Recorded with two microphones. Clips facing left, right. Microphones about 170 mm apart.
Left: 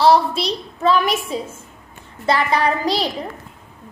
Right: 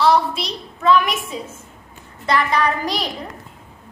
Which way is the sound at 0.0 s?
35° left (ahead or behind).